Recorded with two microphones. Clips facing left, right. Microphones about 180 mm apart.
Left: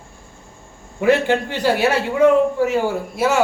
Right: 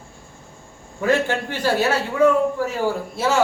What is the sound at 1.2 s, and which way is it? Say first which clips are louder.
Speech: left 4 dB; 15° left (ahead or behind).